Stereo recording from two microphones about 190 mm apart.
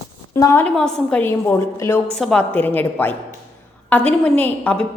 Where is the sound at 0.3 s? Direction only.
20° left (ahead or behind).